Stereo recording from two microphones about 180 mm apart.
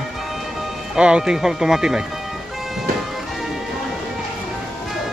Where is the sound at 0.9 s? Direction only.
5° right (ahead or behind).